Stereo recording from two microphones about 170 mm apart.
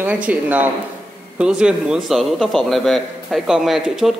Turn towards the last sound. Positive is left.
turn(degrees=0)  # may be behind; listen again after turning